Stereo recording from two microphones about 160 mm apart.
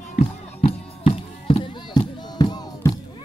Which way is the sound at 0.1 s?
45° left (ahead or behind).